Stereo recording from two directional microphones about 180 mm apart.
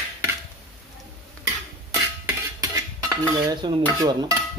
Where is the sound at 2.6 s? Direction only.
20° right (ahead or behind).